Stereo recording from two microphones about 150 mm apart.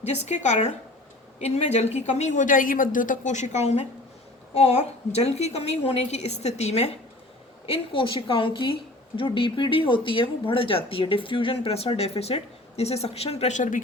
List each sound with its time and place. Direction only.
0.0 s a woman's voice: 50° left (ahead or behind)
7.7 s a woman's voice: 35° left (ahead or behind); by 13.8 s 60° left (ahead or behind)